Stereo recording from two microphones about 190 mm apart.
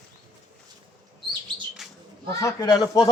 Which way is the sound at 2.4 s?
20° left (ahead or behind).